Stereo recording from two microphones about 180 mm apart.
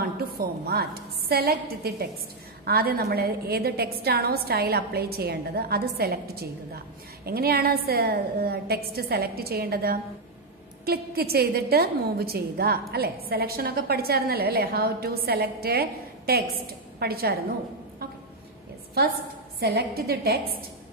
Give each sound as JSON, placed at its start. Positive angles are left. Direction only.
{"t": 0.0, "sound": "a woman's voice", "side_deg": -60}
{"t": 19.6, "sound": "a woman's voice", "side_deg": -60}